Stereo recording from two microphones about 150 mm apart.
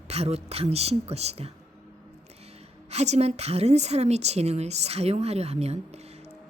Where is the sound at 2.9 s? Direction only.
45° right (ahead or behind).